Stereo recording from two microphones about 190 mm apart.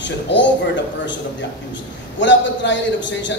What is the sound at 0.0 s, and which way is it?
A man's voice, 70° left (ahead or behind).